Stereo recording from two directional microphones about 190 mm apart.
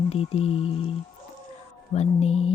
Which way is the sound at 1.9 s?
35° left (ahead or behind).